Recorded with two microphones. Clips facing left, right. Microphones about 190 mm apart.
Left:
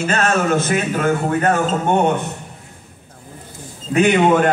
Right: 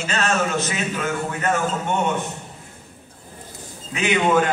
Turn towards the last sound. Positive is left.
turn(degrees=55)  # may be behind; listen again after turning